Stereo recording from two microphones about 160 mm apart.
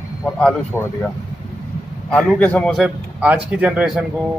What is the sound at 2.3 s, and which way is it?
A man's voice, 10° left (ahead or behind).